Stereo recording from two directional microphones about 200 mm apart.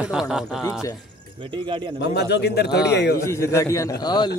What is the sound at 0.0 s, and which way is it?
Speech, 5° right (ahead or behind).